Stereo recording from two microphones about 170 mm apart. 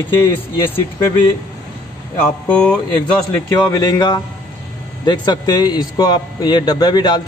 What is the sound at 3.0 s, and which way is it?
Speech, 20° left (ahead or behind).